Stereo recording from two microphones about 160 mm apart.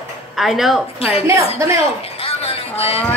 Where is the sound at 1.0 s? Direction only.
40° left (ahead or behind).